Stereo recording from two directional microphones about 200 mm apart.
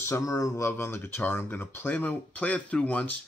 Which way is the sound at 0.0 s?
15° left (ahead or behind).